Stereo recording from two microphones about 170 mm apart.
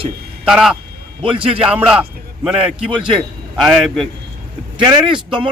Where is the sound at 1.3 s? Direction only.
30° right (ahead or behind).